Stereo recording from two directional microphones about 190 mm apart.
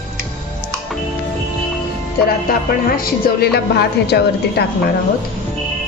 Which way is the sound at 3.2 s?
55° left (ahead or behind).